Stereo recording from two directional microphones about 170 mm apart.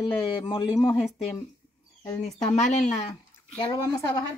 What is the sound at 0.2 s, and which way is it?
Speech, 30° left (ahead or behind).